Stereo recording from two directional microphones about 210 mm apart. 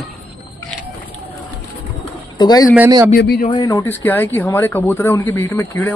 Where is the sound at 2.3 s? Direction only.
20° left (ahead or behind).